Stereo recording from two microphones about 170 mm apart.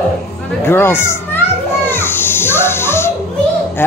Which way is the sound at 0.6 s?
15° left (ahead or behind).